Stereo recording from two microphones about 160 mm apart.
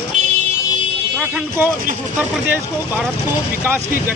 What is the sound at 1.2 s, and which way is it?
Speech, 5° right (ahead or behind).